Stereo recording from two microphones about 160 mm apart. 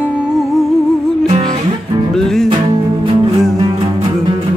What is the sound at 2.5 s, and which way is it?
Music, 30° right (ahead or behind).